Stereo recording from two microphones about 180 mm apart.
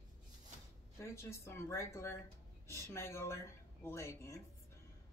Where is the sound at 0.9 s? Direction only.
15° left (ahead or behind).